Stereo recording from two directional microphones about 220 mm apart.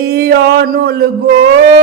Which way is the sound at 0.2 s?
45° right (ahead or behind).